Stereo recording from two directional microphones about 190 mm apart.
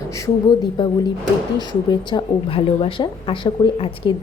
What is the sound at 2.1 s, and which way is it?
A woman's voice, 25° left (ahead or behind).